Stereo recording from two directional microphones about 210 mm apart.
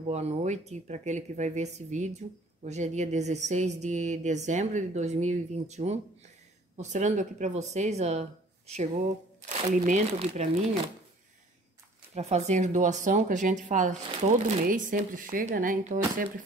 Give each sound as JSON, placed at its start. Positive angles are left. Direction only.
{"t": 0.1, "sound": "speech", "side_deg": -30}
{"t": 12.2, "sound": "speech", "side_deg": -30}